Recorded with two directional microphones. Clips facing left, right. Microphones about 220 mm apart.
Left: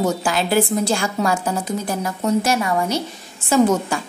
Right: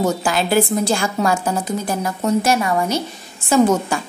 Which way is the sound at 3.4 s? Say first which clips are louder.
Right 1 dB; 50° right (ahead or behind).